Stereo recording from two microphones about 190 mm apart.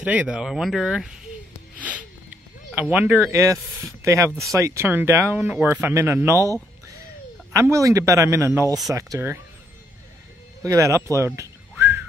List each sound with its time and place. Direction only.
0.0 s speech: 5° right (ahead or behind)
1.8 s music: 5° right (ahead or behind)
2.7 s speech: 10° right (ahead or behind)
10.6 s speech: 15° right (ahead or behind)